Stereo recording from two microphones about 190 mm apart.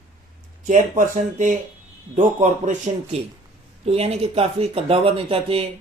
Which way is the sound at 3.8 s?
30° right (ahead or behind).